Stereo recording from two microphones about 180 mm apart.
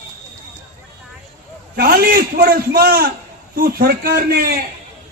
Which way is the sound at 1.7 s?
55° right (ahead or behind).